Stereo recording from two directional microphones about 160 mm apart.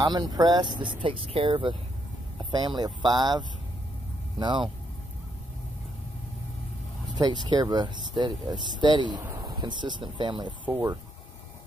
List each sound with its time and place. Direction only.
0.0 s speech: 25° right (ahead or behind)
7.4 s speech: 25° right (ahead or behind)
10.6 s speech: 15° right (ahead or behind)